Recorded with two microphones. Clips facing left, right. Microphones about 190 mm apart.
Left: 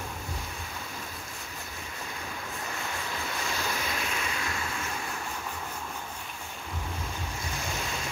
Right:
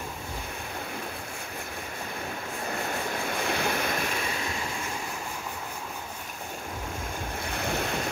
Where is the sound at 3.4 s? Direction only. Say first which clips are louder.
Right 5 dB; 60° right (ahead or behind).